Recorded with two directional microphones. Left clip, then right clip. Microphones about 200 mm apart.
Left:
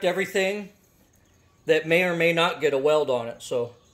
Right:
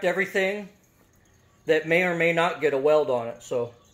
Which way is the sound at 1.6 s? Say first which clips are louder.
Left 1 dB; 15° left (ahead or behind).